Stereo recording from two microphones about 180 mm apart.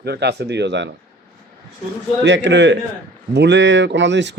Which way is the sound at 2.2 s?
80° right.